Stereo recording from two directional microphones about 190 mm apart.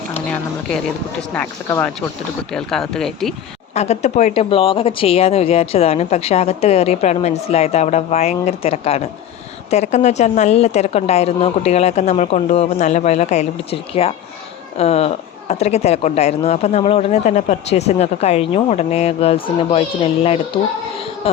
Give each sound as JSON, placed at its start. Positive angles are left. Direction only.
{"t": 1.3, "sound": "speech", "side_deg": 10}
{"t": 3.8, "sound": "speech", "side_deg": 35}